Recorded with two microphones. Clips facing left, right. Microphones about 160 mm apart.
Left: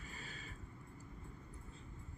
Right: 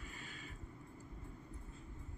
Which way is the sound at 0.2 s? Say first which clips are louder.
Even; 35° left (ahead or behind).